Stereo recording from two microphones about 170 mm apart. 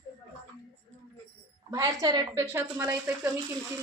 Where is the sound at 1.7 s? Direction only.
20° right (ahead or behind).